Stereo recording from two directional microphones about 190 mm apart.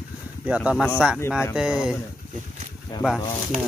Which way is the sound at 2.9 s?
20° left (ahead or behind).